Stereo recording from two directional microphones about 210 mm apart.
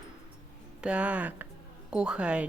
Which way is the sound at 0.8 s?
5° right (ahead or behind).